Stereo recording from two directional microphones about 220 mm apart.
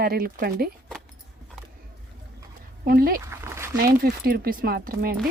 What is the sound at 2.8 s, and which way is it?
Speech, 40° right (ahead or behind).